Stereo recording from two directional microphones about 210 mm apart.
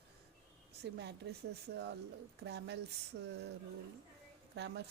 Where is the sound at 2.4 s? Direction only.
55° right (ahead or behind).